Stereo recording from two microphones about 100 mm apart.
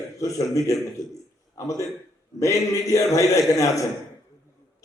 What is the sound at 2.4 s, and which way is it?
A man's voice, 35° left (ahead or behind).